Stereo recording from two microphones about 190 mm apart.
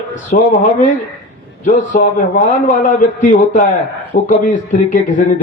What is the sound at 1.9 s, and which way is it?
Speech, 45° left (ahead or behind).